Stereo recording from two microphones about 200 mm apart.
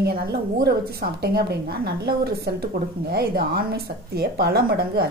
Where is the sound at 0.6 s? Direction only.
50° right (ahead or behind).